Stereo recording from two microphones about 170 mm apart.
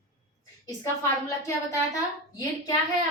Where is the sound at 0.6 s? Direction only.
20° left (ahead or behind).